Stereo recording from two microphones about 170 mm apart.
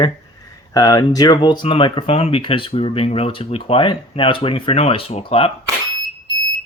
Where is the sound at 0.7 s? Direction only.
20° left (ahead or behind).